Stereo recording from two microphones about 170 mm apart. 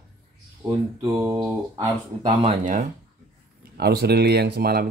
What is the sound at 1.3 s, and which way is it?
Speech, 30° right (ahead or behind).